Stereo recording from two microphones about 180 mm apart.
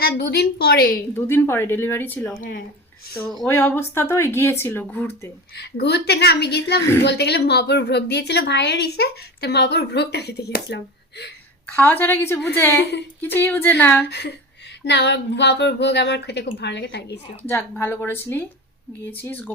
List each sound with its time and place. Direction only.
0.0 s a woman's voice: 65° left (ahead or behind)
1.1 s speech: 15° left (ahead or behind)
2.4 s speech: 50° left (ahead or behind)
3.2 s speech: 5° left (ahead or behind)
3.4 s speech: 15° left (ahead or behind)
5.5 s a woman's voice: 65° left (ahead or behind)
11.8 s speech: 10° left (ahead or behind)
14.1 s speech: 70° left (ahead or behind)
17.4 s speech: 10° left (ahead or behind)